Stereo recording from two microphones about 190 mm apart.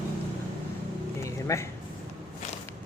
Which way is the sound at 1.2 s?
15° left (ahead or behind).